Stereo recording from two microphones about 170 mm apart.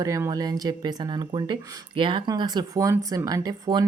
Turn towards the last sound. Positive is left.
turn(degrees=-25)  # may be behind; listen again after turning